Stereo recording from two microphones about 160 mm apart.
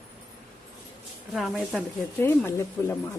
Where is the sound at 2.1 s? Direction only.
15° left (ahead or behind).